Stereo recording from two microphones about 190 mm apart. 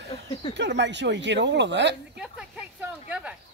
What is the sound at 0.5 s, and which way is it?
Speech, 65° right (ahead or behind).